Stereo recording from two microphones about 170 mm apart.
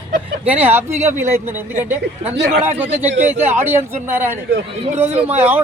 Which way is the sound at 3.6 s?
10° right (ahead or behind).